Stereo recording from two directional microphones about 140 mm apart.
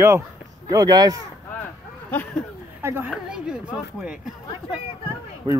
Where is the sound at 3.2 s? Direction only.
5° right (ahead or behind).